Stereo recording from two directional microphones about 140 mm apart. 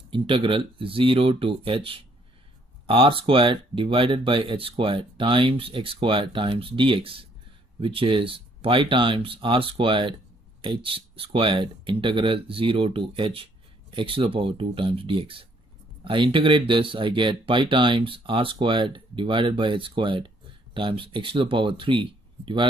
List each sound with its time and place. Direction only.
0.1 s speech: 40° right (ahead or behind)